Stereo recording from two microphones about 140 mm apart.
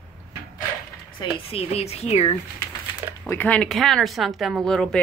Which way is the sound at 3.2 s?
10° left (ahead or behind).